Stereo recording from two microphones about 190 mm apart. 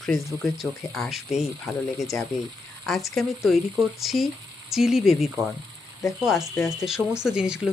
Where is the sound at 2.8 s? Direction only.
Centre (ahead or behind).